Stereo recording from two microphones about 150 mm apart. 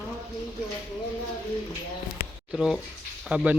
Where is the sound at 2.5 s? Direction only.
5° right (ahead or behind).